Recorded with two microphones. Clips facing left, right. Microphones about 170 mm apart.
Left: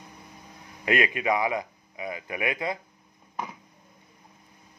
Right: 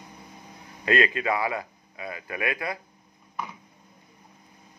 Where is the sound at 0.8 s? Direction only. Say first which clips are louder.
Right 1 dB; 15° left (ahead or behind).